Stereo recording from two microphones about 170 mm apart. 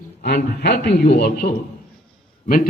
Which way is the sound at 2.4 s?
55° left (ahead or behind).